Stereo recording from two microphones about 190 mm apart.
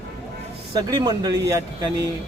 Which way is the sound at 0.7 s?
20° right (ahead or behind).